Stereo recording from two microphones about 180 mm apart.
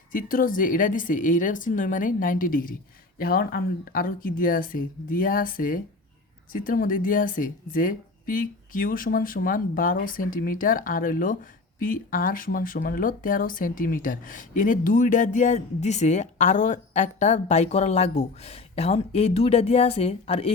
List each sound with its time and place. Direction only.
0.1 s speech: 50° left (ahead or behind); by 20.5 s 35° left (ahead or behind)